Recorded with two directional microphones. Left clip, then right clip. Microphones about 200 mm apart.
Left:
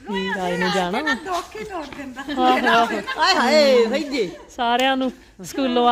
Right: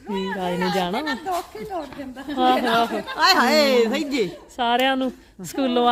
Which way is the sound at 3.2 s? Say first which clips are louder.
Left 1 dB; 55° right (ahead or behind).